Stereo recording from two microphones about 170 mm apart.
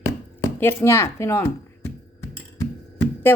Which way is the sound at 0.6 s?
15° left (ahead or behind).